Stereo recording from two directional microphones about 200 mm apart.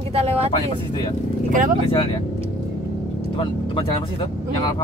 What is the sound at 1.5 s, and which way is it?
Speech, 40° right (ahead or behind).